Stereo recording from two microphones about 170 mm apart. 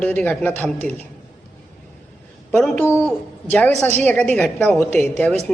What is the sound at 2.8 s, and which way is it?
A man's voice, 15° left (ahead or behind).